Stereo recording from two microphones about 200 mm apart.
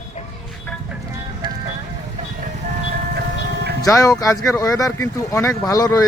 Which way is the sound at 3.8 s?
15° left (ahead or behind).